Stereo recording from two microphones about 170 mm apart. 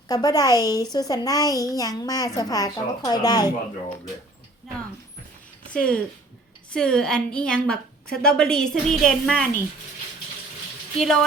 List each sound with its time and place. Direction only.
0.1 s a child's voice: 20° left (ahead or behind)
5.7 s a woman's voice: 5° left (ahead or behind)
10.9 s a woman's voice: centre (ahead or behind)